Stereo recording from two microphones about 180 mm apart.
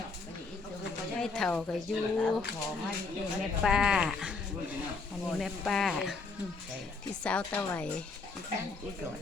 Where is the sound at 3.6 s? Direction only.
5° right (ahead or behind).